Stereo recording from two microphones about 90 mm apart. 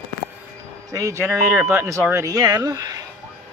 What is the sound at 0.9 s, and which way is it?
Speech, 35° right (ahead or behind).